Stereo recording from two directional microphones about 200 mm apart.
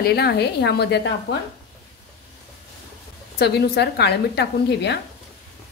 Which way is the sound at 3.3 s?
55° left (ahead or behind).